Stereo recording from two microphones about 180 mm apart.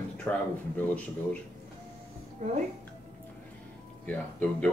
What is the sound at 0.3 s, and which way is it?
Speech, 10° left (ahead or behind).